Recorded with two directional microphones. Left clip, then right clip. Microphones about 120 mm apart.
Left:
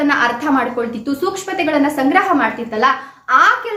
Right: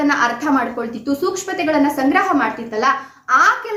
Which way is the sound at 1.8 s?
10° left (ahead or behind).